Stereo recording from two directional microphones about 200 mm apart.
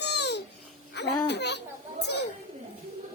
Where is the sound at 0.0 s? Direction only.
60° left (ahead or behind).